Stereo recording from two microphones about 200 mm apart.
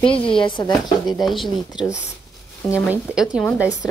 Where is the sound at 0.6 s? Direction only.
20° left (ahead or behind).